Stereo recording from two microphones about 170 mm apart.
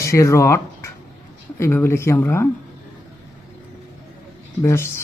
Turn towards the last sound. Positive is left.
turn(degrees=15)  # may be behind; listen again after turning